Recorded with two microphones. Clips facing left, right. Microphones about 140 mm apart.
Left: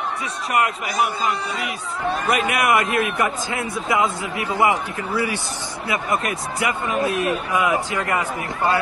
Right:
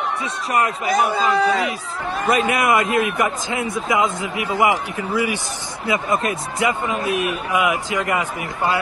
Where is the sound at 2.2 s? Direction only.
30° right (ahead or behind); by 5.4 s 15° right (ahead or behind).